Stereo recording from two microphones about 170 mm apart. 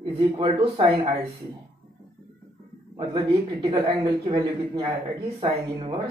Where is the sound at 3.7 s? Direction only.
25° right (ahead or behind).